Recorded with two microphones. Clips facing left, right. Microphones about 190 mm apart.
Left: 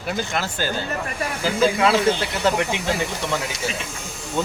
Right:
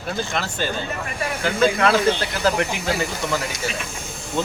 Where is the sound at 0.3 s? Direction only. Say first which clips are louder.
Even; 5° left (ahead or behind).